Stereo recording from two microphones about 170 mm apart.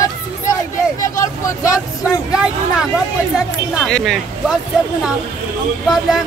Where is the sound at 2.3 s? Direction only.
5° right (ahead or behind).